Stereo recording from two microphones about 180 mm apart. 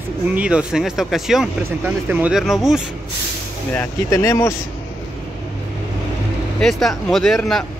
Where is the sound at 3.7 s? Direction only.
20° left (ahead or behind).